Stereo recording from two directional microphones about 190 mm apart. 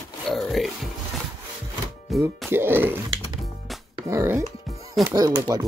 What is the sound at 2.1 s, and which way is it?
Music, centre (ahead or behind).